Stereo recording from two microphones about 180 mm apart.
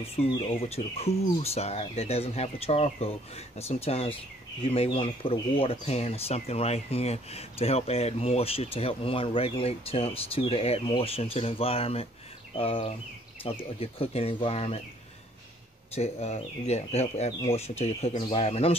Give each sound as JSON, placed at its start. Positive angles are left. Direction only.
{"t": 0.0, "sound": "speech", "side_deg": 30}
{"t": 15.9, "sound": "speech", "side_deg": 35}